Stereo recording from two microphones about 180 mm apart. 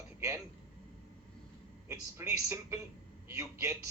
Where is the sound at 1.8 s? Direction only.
15° right (ahead or behind).